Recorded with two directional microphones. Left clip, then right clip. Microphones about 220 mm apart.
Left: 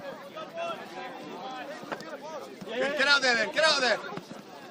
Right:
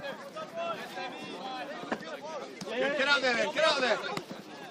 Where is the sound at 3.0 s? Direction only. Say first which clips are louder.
Left 5 dB; 25° left (ahead or behind).